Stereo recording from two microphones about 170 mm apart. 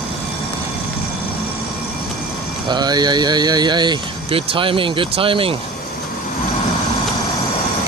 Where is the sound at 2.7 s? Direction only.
25° right (ahead or behind).